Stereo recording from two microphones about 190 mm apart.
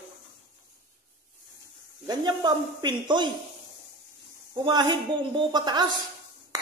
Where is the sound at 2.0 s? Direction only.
20° right (ahead or behind).